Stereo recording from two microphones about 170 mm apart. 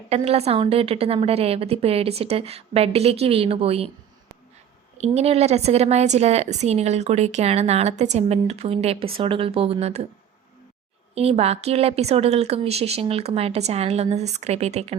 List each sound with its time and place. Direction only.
0.1 s a woman's voice: 35° right (ahead or behind)
4.9 s a woman's voice: 40° right (ahead or behind)
11.1 s a woman's voice: 35° right (ahead or behind)